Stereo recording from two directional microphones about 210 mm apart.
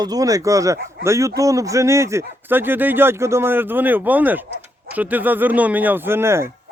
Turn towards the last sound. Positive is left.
turn(degrees=-10)  # may be behind; listen again after turning